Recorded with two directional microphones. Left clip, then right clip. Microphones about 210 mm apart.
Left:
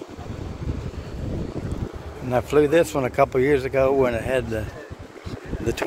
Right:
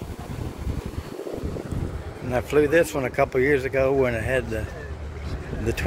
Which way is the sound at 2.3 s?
15° left (ahead or behind).